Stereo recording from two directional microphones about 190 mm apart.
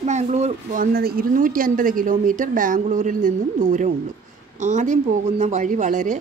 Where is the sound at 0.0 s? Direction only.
35° right (ahead or behind).